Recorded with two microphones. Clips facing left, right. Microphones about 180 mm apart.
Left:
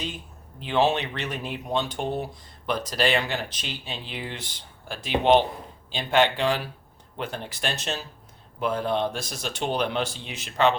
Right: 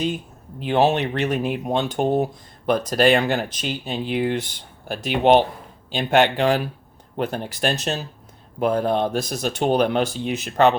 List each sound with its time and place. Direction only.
0.6 s speech: 60° right (ahead or behind)